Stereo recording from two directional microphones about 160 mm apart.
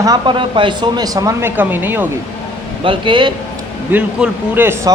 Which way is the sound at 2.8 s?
30° right (ahead or behind).